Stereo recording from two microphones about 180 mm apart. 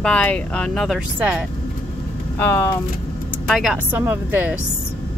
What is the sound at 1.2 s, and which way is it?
Speech, 10° right (ahead or behind).